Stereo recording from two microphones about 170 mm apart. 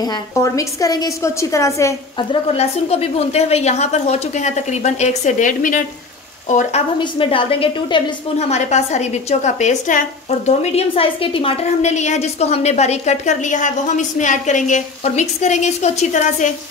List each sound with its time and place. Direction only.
0.0 s a woman's voice: 20° left (ahead or behind)
2.1 s a woman's voice: 35° left (ahead or behind)
7.0 s a woman's voice: 30° left (ahead or behind)